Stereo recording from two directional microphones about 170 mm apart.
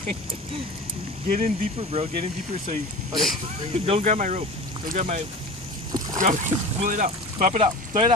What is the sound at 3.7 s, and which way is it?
Speech, 35° right (ahead or behind).